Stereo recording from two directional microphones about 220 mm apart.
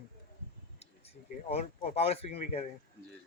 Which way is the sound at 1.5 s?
30° left (ahead or behind).